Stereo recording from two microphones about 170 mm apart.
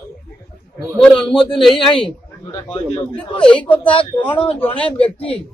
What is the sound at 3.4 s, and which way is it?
A woman's voice, 5° left (ahead or behind).